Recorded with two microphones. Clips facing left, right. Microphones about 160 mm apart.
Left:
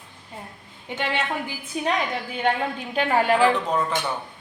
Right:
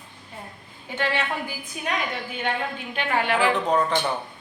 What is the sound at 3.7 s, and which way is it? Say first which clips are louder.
Speech: right 2 dB; centre (ahead or behind).